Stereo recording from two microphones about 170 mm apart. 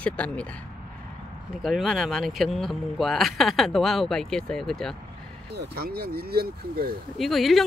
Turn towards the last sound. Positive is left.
turn(degrees=0)  # may be behind; listen again after turning